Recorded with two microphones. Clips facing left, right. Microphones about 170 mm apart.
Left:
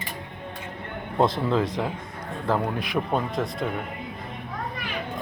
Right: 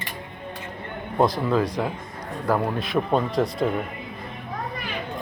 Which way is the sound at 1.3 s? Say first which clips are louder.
Right 1 dB; 25° left (ahead or behind).